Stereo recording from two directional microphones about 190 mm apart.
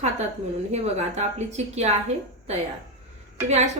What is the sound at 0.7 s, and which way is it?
A woman's voice, 35° right (ahead or behind).